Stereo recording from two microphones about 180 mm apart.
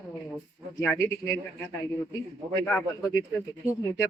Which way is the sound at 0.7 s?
15° left (ahead or behind).